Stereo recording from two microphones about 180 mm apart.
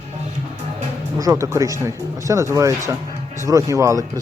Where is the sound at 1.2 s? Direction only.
15° right (ahead or behind).